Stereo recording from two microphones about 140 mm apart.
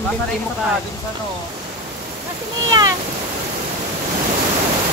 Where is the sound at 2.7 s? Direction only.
25° right (ahead or behind).